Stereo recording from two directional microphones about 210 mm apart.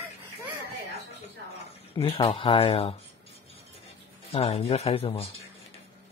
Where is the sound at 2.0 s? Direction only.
25° left (ahead or behind).